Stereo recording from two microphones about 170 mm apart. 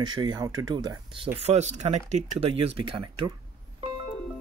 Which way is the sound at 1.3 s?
40° right (ahead or behind).